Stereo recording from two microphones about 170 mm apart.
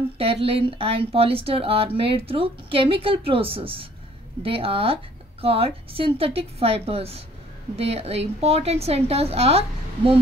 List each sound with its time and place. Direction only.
0.2 s a woman's voice: 35° right (ahead or behind)